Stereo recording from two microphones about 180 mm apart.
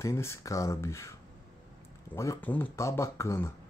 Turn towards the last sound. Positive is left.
turn(degrees=15)  # may be behind; listen again after turning